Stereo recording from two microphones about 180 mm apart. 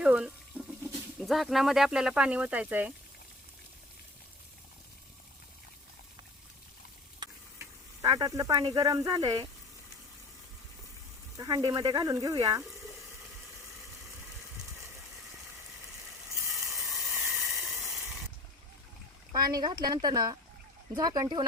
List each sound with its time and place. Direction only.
0.0 s water tap: 5° right (ahead or behind)
1.3 s speech: centre (ahead or behind)
7.2 s sizzle: 20° right (ahead or behind)
11.3 s speech: 20° right (ahead or behind)
16.5 s a sound: centre (ahead or behind)
19.3 s speech: 20° right (ahead or behind)